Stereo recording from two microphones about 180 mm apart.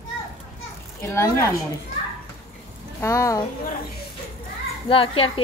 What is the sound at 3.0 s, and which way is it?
Speech, 15° left (ahead or behind).